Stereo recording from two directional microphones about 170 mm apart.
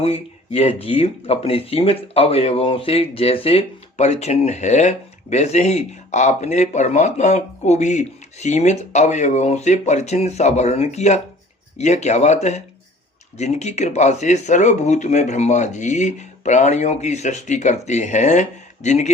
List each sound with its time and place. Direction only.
0.0 s speech: 35° left (ahead or behind)